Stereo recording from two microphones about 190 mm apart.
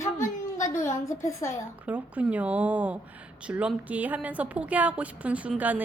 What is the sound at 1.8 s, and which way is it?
Speech, 5° right (ahead or behind).